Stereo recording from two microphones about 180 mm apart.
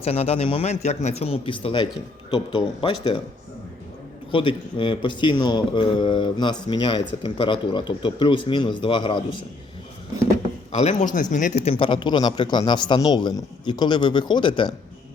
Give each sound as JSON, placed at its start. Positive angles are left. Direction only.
{"t": 0.0, "sound": "a man's voice", "side_deg": 35}
{"t": 4.3, "sound": "speech", "side_deg": 30}
{"t": 10.7, "sound": "speech", "side_deg": 35}
{"t": 11.7, "sound": "speech", "side_deg": 30}